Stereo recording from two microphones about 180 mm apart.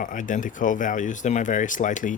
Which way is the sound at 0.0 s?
45° left (ahead or behind).